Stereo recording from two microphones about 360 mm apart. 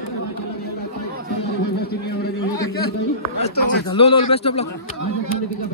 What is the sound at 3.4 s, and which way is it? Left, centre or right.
A man's voice, centre.